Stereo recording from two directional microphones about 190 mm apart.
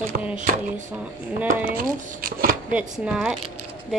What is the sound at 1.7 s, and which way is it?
Speech, 50° right (ahead or behind).